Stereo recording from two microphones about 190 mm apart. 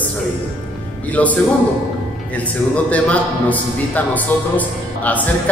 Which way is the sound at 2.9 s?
5° left (ahead or behind).